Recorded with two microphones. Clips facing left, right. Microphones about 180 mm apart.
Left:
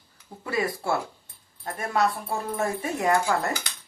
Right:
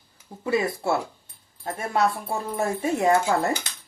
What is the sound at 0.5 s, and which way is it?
Speech, 25° right (ahead or behind).